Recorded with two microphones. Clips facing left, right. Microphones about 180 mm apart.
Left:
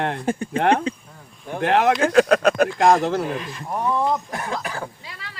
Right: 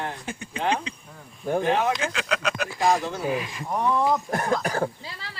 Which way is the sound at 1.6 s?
75° left (ahead or behind).